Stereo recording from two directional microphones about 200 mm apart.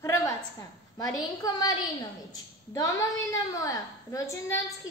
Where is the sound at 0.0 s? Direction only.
15° left (ahead or behind).